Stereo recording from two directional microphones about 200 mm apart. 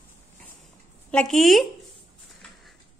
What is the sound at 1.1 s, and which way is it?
Speech, 5° left (ahead or behind).